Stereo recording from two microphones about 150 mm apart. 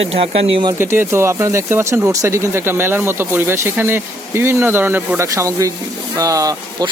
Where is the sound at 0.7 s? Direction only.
15° right (ahead or behind).